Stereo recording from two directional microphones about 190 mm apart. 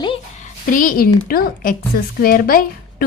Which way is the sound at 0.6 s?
45° left (ahead or behind).